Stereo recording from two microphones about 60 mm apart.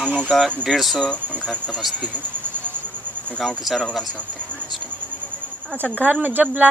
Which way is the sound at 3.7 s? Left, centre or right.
Centre.